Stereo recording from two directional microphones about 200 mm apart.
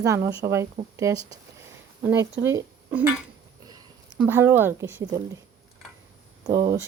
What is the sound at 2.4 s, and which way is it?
Speech, 10° right (ahead or behind).